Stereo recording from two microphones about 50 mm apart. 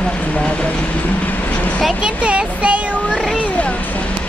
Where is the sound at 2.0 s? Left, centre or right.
Right.